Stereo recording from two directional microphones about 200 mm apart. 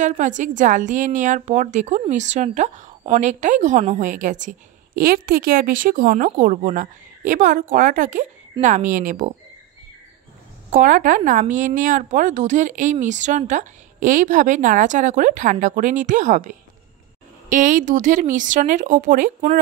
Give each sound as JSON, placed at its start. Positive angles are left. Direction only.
{"t": 0.0, "sound": "a woman's voice", "side_deg": -40}
{"t": 10.7, "sound": "a woman's voice", "side_deg": -40}